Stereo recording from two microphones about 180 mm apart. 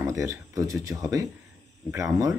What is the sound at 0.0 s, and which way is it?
Speech, 15° right (ahead or behind).